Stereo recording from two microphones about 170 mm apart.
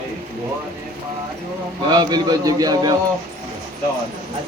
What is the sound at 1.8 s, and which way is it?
A man's voice, 25° right (ahead or behind).